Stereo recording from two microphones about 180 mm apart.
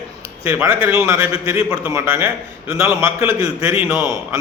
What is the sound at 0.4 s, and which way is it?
A man's voice, 15° right (ahead or behind).